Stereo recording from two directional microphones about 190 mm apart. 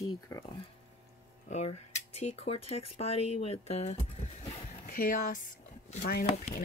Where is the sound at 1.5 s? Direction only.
35° left (ahead or behind).